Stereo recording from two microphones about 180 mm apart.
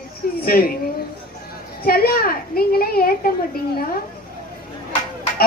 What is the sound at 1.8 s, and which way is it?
A woman's voice, 55° left (ahead or behind).